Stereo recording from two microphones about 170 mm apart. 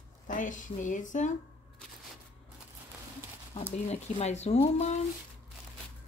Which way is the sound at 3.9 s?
40° left (ahead or behind).